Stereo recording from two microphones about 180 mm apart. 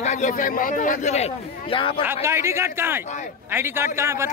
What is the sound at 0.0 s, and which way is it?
A man's voice, 40° left (ahead or behind).